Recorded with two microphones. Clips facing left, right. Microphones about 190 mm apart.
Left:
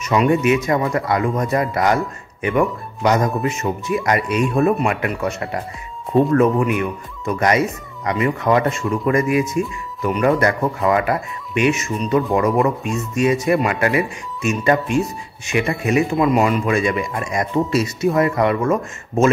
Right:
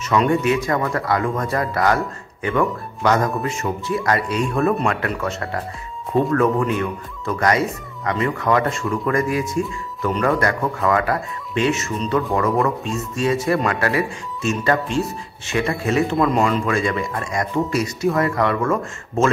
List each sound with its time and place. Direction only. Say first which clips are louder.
0.0 s speech: left 2 dB; 15° left (ahead or behind)